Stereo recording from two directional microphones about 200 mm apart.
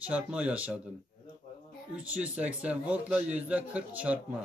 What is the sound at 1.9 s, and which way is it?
Speech, 5° right (ahead or behind).